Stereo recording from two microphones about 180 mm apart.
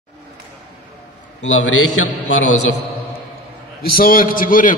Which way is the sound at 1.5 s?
90° left.